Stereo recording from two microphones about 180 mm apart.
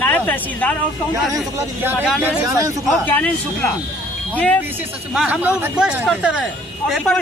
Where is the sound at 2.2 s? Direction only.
20° right (ahead or behind).